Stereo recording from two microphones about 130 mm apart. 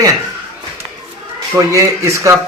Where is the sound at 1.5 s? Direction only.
25° right (ahead or behind).